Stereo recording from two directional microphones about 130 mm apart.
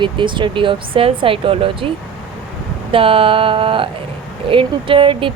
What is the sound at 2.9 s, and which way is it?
Speech, 45° right (ahead or behind).